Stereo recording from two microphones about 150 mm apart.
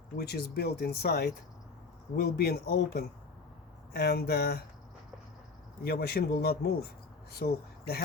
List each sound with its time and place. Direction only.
0.2 s speech: 90° left
5.8 s speech: 90° left